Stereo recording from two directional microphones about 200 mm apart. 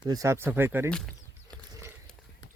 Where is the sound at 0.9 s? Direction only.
5° left (ahead or behind).